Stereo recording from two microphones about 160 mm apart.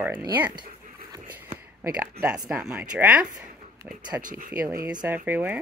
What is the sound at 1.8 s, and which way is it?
Speech, 10° right (ahead or behind).